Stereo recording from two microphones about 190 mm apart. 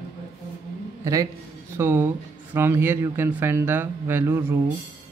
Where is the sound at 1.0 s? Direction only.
15° right (ahead or behind).